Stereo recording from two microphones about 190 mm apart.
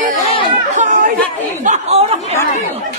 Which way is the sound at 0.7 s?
40° right (ahead or behind).